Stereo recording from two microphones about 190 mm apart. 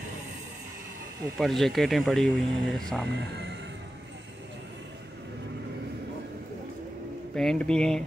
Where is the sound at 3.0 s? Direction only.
60° right (ahead or behind).